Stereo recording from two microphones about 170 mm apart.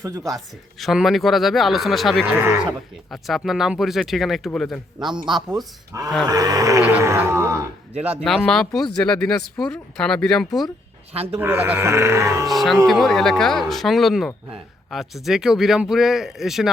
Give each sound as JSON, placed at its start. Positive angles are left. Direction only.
{"t": 0.0, "sound": "speech", "side_deg": -20}
{"t": 0.8, "sound": "speech", "side_deg": 0}
{"t": 2.2, "sound": "speech", "side_deg": -15}
{"t": 3.1, "sound": "speech", "side_deg": 0}
{"t": 5.9, "sound": "speech", "side_deg": -20}
{"t": 8.2, "sound": "speech", "side_deg": 0}
{"t": 11.1, "sound": "speech", "side_deg": -35}
{"t": 11.3, "sound": "speech", "side_deg": -10}
{"t": 12.5, "sound": "speech", "side_deg": 0}